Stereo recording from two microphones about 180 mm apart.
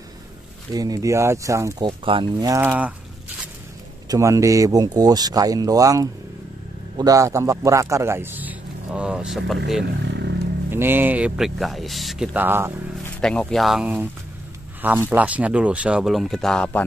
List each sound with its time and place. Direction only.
0.7 s speech: 20° right (ahead or behind)
2.5 s a man's voice: 10° right (ahead or behind)
4.1 s a man's voice: 15° right (ahead or behind)
10.0 s vehicle: 75° right (ahead or behind)
10.7 s a man's voice: 10° right (ahead or behind)
13.2 s a man's voice: 5° left (ahead or behind)